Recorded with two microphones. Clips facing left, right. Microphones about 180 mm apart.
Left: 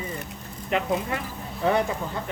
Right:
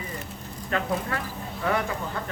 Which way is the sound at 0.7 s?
20° left (ahead or behind).